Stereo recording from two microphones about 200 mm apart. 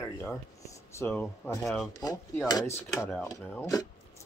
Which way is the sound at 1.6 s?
Centre (ahead or behind).